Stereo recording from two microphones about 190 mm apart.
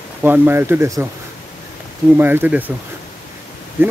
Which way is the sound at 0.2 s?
10° right (ahead or behind).